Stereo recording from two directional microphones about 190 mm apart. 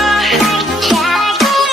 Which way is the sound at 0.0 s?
Centre (ahead or behind).